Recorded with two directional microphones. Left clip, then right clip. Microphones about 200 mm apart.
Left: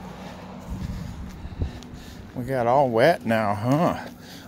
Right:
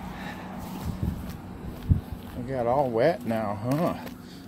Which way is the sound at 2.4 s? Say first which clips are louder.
Left 5 dB; 40° left (ahead or behind).